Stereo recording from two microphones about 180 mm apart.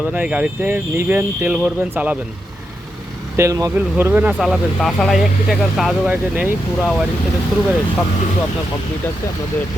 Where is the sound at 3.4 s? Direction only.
20° right (ahead or behind).